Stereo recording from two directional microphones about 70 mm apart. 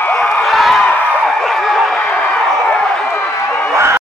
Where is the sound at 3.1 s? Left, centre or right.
Left.